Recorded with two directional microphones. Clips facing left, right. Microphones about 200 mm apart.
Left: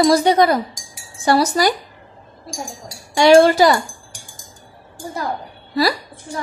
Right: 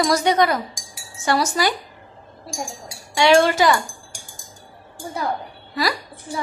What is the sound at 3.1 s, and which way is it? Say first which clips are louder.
Speech: left 5 dB; 40° left (ahead or behind).